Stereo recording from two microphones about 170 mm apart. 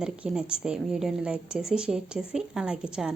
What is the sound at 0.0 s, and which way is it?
A woman's voice, 5° right (ahead or behind).